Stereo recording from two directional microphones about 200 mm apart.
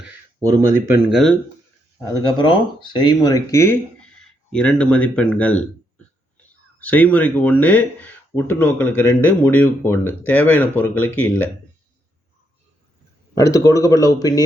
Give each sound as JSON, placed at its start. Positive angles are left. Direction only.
{"t": 0.4, "sound": "speech", "side_deg": -15}
{"t": 1.1, "sound": "speech", "side_deg": 0}
{"t": 2.4, "sound": "speech", "side_deg": 25}
{"t": 6.7, "sound": "speech", "side_deg": 10}
{"t": 13.3, "sound": "speech", "side_deg": 15}